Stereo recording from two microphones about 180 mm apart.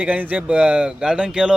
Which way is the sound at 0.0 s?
10° right (ahead or behind).